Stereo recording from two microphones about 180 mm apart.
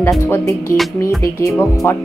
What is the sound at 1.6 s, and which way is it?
Music, 15° left (ahead or behind).